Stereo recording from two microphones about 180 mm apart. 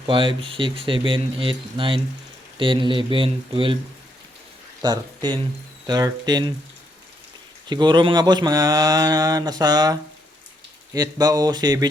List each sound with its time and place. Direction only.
0.1 s speech: 30° right (ahead or behind)
4.8 s speech: 25° right (ahead or behind)
7.7 s speech: 25° right (ahead or behind)